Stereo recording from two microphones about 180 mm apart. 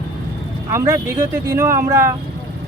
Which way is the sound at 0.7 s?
15° right (ahead or behind).